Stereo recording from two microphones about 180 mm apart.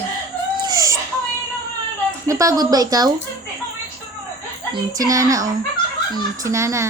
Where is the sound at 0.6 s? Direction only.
20° right (ahead or behind).